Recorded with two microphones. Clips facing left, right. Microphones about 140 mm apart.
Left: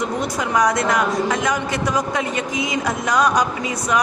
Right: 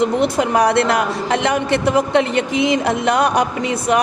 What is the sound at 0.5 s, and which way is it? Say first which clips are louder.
A woman's voice: even; 65° right (ahead or behind).